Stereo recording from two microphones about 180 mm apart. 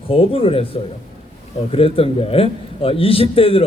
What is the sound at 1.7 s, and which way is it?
A man's voice, 30° left (ahead or behind).